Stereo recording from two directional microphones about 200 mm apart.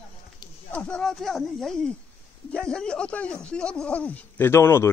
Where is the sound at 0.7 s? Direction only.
5° left (ahead or behind).